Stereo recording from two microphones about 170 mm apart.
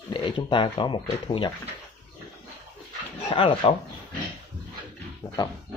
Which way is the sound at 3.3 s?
30° left (ahead or behind).